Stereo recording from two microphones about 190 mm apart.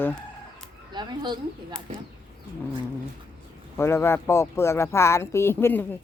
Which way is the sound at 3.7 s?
15° left (ahead or behind).